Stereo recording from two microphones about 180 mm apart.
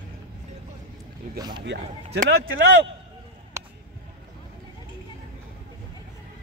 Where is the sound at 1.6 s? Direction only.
65° right (ahead or behind).